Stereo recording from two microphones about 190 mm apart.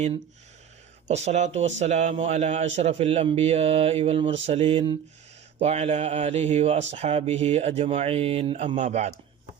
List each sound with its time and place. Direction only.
1.0 s speech: 35° right (ahead or behind)
4.4 s mantra: 30° right (ahead or behind)
5.5 s speech: 35° right (ahead or behind)